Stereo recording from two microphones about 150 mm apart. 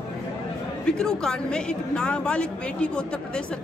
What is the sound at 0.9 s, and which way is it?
Speech, 5° left (ahead or behind).